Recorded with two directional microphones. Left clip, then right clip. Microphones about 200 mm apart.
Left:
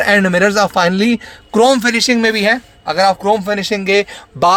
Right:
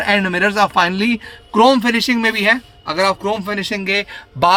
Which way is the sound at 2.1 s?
25° left (ahead or behind).